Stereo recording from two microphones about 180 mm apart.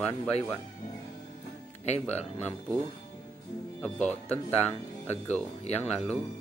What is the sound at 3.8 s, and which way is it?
Speech, 5° left (ahead or behind).